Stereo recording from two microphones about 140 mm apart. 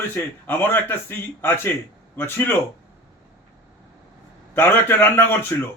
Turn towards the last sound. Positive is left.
turn(degrees=15)  # may be behind; listen again after turning